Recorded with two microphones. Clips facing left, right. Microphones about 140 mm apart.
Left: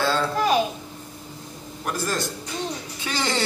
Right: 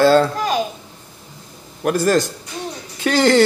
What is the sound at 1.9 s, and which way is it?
Speech, 75° right (ahead or behind).